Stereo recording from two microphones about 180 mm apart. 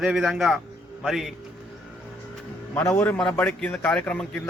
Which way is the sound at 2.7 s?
10° left (ahead or behind).